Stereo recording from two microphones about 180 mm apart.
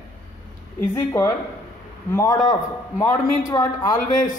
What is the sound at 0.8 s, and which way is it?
A man's voice, 15° left (ahead or behind).